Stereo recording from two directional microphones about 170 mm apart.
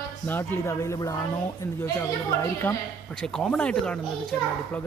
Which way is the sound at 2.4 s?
15° left (ahead or behind).